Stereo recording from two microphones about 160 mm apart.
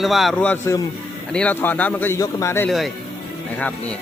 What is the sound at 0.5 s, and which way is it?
Speech, 15° left (ahead or behind).